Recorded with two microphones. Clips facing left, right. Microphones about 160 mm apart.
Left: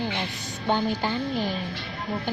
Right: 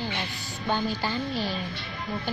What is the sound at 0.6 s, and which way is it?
Speech, 20° left (ahead or behind).